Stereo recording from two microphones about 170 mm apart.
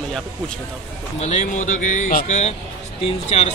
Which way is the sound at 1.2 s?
40° left (ahead or behind).